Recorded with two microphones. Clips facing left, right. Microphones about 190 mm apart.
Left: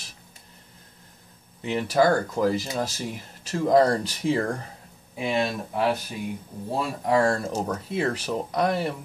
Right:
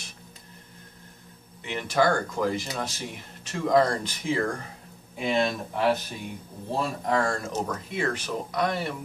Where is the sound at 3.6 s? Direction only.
35° left (ahead or behind).